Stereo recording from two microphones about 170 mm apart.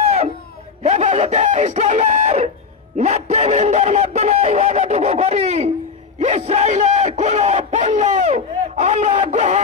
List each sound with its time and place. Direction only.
0.8 s chicken: 40° right (ahead or behind)
3.0 s honk: 40° right (ahead or behind)
6.2 s a sound: 40° right (ahead or behind)